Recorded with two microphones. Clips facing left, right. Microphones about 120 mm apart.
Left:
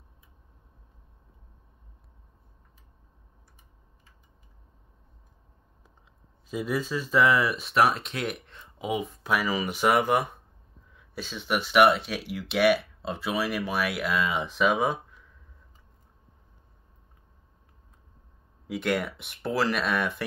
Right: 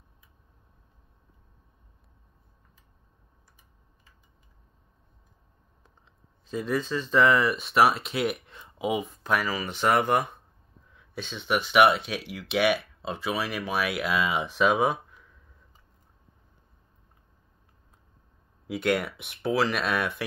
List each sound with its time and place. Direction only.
6.4 s speech: 10° left (ahead or behind)
18.7 s speech: centre (ahead or behind)